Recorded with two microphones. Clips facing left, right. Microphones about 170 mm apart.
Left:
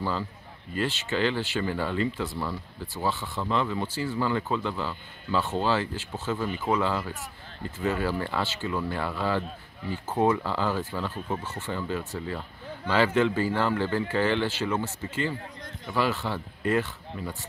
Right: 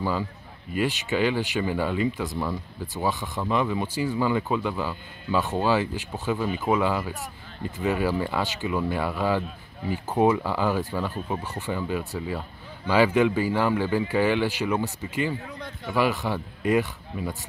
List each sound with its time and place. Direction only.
0.7 s speech: 15° right (ahead or behind)